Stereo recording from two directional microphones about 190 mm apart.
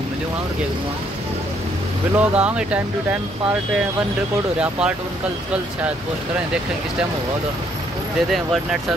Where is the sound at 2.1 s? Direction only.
5° right (ahead or behind).